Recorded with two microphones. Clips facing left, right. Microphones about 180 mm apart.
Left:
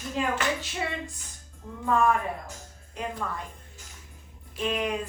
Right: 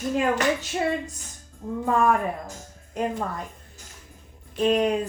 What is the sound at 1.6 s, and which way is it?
Speech, 45° right (ahead or behind).